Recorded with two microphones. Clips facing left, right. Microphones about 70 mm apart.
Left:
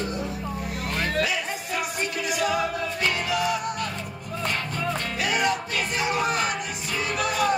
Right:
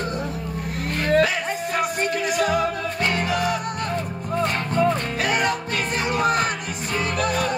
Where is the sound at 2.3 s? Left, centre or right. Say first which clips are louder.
Right 2 dB; right.